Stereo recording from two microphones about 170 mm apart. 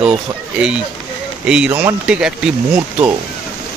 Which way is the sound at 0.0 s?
5° right (ahead or behind).